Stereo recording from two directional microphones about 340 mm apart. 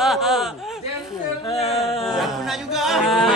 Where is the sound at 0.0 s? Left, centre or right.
Centre.